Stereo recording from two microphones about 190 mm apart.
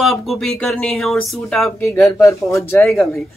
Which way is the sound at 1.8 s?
15° left (ahead or behind).